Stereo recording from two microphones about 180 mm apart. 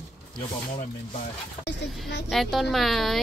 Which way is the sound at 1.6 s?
75° left (ahead or behind).